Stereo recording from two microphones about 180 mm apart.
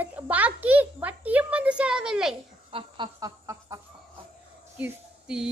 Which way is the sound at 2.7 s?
25° right (ahead or behind).